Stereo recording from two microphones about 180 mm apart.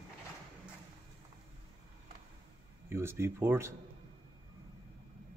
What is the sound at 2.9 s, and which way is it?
Speech, 15° right (ahead or behind).